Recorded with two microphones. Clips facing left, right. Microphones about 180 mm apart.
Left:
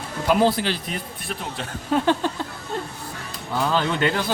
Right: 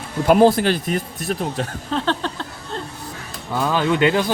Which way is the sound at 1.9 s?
10° left (ahead or behind).